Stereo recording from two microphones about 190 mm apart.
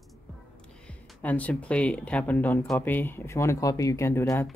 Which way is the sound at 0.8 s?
10° left (ahead or behind).